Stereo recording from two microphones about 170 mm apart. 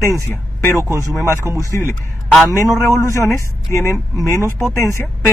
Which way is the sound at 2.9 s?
15° left (ahead or behind).